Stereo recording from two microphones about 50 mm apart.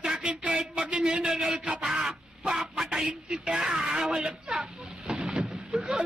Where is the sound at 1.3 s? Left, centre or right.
Centre.